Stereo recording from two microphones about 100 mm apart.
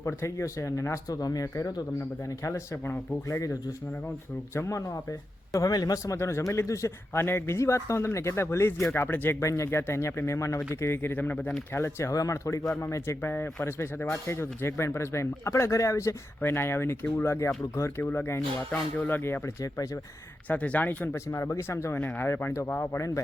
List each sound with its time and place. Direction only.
0.0 s speech: 30° left (ahead or behind)
9.4 s speech: 30° left (ahead or behind)
20.5 s speech: 15° left (ahead or behind)
21.2 s speech: 30° left (ahead or behind)